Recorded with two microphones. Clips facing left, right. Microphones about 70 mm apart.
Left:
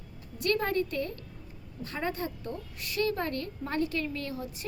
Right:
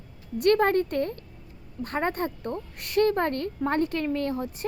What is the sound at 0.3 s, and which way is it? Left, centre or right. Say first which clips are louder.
A woman's voice: right 7 dB; right.